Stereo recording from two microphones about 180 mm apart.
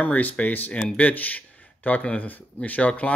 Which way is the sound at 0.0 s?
10° left (ahead or behind).